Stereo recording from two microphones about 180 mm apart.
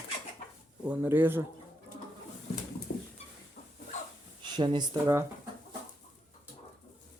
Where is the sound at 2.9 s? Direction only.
80° left.